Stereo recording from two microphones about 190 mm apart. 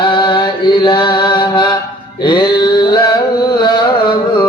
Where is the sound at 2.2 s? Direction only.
25° left (ahead or behind).